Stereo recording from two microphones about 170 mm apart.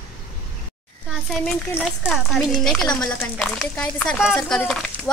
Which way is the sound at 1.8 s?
Centre (ahead or behind).